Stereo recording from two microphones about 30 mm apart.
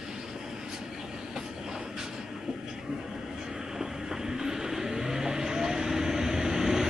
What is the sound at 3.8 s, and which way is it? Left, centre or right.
Vehicle, centre.